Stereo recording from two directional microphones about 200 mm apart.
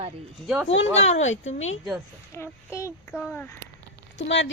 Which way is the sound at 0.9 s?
35° left (ahead or behind).